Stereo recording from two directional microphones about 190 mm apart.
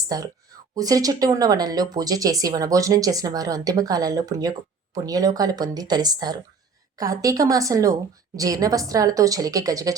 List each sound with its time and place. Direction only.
0.1 s a woman's voice: 20° right (ahead or behind)